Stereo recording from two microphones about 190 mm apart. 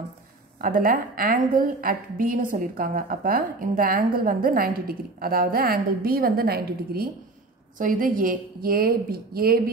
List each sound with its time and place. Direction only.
0.6 s a woman's voice: 50° right (ahead or behind)